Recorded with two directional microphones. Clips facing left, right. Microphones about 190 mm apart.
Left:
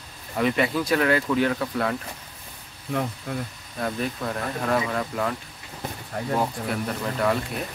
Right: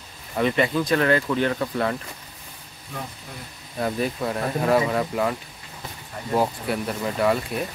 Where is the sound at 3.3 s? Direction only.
65° left (ahead or behind).